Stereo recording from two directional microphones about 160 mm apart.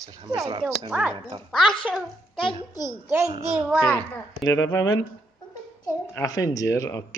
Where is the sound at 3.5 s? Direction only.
5° right (ahead or behind).